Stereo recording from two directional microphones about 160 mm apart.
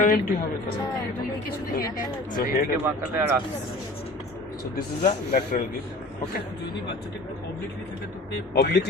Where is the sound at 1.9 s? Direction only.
60° left (ahead or behind).